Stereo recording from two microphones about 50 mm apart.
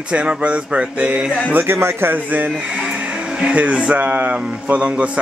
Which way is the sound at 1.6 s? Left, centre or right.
Right.